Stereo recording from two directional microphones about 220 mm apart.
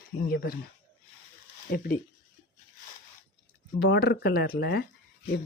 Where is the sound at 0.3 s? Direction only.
45° left (ahead or behind).